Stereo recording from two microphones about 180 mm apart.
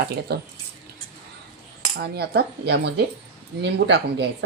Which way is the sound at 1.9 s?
65° right (ahead or behind).